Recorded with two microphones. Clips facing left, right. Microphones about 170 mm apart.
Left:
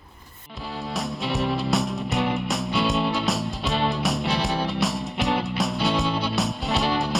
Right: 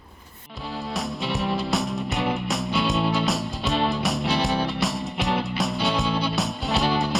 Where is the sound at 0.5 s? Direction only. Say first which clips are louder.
Even; centre (ahead or behind).